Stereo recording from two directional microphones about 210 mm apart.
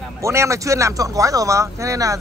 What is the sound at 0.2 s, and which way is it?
A man's voice, 15° right (ahead or behind).